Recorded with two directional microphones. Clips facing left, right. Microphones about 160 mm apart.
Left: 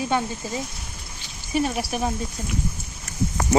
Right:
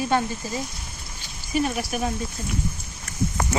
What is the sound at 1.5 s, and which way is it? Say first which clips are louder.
Speech: left 1 dB; 30° left (ahead or behind).